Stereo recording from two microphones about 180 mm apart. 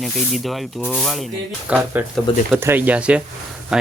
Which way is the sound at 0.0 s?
Centre (ahead or behind).